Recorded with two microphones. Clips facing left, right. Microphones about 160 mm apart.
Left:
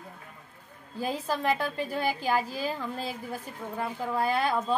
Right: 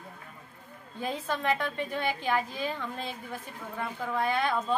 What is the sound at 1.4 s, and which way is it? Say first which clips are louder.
Speech: left 1 dB; 35° left (ahead or behind).